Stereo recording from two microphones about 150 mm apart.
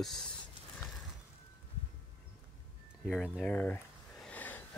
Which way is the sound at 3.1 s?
5° left (ahead or behind).